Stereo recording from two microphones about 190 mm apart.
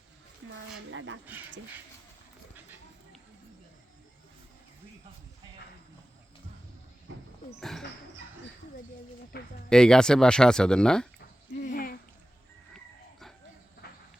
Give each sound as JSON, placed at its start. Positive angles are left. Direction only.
{"t": 0.4, "sound": "a sound", "side_deg": -90}
{"t": 0.9, "sound": "speech", "side_deg": -85}
{"t": 7.1, "sound": "wild animals", "side_deg": -80}
{"t": 7.6, "sound": "dog", "side_deg": 0}
{"t": 9.3, "sound": "speech", "side_deg": 55}
{"t": 9.6, "sound": "speech", "side_deg": 5}
{"t": 11.6, "sound": "a sound", "side_deg": 50}
{"t": 12.7, "sound": "a sound", "side_deg": 0}
{"t": 13.8, "sound": "cricket", "side_deg": 55}